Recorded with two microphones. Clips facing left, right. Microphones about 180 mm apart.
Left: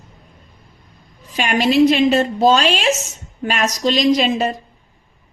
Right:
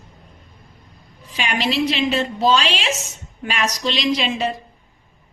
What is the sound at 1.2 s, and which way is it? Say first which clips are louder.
A woman's voice: left 5 dB; 45° left (ahead or behind).